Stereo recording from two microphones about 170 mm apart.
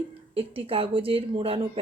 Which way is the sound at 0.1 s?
35° right (ahead or behind).